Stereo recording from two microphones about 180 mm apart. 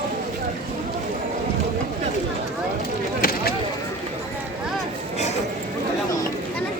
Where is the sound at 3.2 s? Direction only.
55° left (ahead or behind).